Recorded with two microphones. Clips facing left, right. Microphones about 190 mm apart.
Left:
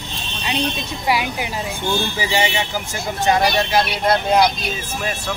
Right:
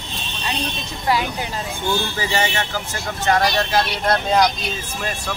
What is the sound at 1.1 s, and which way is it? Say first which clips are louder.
Speech: even; 15° left (ahead or behind).